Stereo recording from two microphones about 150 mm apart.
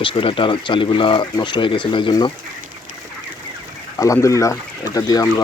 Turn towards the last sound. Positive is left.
turn(degrees=25)  # may be behind; listen again after turning